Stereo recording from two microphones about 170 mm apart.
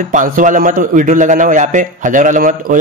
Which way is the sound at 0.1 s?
50° right (ahead or behind).